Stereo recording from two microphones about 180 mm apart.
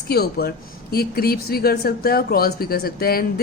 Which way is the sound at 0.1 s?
60° left (ahead or behind).